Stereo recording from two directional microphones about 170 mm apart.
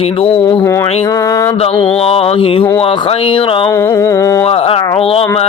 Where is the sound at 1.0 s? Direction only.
20° left (ahead or behind).